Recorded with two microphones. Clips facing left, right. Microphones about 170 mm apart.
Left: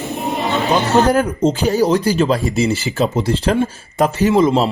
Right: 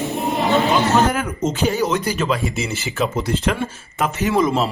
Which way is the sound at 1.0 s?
35° left (ahead or behind).